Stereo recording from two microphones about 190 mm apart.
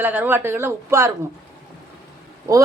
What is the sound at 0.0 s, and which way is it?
Speech, 10° right (ahead or behind).